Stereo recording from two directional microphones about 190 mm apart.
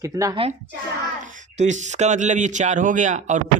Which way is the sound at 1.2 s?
40° right (ahead or behind).